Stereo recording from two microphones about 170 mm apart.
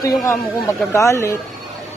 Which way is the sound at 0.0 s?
15° left (ahead or behind).